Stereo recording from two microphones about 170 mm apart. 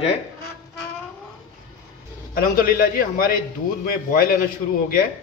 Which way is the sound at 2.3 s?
60° left (ahead or behind).